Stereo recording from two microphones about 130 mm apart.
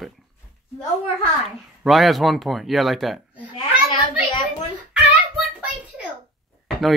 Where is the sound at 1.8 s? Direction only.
Centre (ahead or behind).